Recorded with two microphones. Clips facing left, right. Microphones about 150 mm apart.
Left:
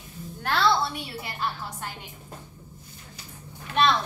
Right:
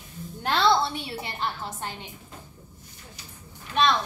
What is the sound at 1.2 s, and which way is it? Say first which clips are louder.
Speech: left 2 dB; 25° right (ahead or behind).